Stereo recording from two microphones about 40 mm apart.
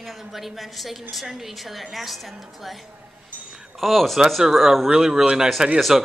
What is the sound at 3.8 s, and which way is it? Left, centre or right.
A woman's voice, centre.